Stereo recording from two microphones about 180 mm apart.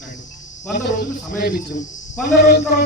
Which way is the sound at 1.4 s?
60° left (ahead or behind).